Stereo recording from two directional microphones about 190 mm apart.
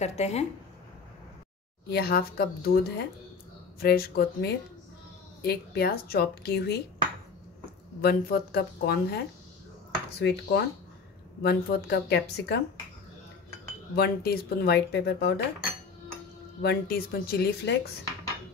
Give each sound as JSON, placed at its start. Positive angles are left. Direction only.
{"t": 0.0, "sound": "speech", "side_deg": 35}
{"t": 1.9, "sound": "speech", "side_deg": 55}
{"t": 8.0, "sound": "speech", "side_deg": 55}
{"t": 13.9, "sound": "speech", "side_deg": 55}
{"t": 16.6, "sound": "speech", "side_deg": 55}